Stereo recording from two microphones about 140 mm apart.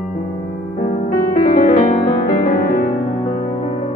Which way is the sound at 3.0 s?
45° left (ahead or behind).